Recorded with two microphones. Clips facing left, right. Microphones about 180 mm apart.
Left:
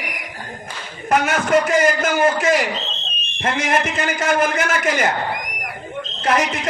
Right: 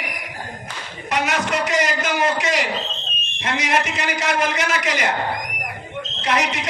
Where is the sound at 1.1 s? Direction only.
50° left (ahead or behind).